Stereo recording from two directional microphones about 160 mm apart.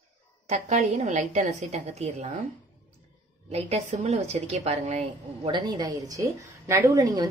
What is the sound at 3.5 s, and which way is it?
Speech, 45° right (ahead or behind).